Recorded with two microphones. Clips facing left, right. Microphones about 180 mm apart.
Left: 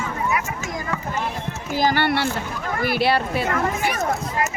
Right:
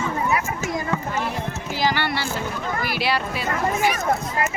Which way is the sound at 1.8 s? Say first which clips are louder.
Left 4 dB; 50° left (ahead or behind).